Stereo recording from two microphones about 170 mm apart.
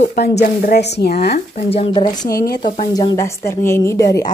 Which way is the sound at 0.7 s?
80° left.